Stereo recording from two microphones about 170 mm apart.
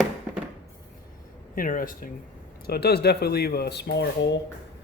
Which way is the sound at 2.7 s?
65° left (ahead or behind).